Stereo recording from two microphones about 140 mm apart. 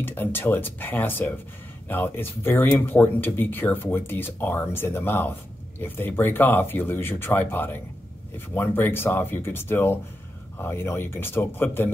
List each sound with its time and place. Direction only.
0.0 s speech: 15° left (ahead or behind)